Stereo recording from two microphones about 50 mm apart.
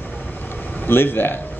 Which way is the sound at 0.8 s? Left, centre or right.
Left.